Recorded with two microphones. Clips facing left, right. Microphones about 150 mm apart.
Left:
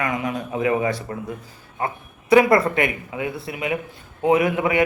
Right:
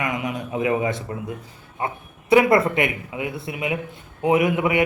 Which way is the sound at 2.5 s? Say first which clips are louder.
Even; 25° right (ahead or behind).